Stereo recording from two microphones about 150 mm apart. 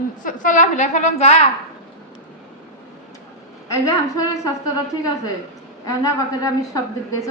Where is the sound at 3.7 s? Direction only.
20° left (ahead or behind).